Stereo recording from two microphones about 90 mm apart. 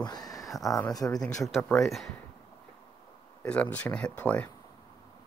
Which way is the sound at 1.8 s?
Centre (ahead or behind).